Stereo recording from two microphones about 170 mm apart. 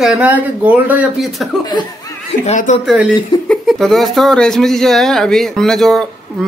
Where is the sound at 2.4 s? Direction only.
45° left (ahead or behind).